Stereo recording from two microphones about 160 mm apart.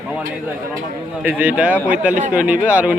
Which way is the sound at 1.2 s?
10° right (ahead or behind).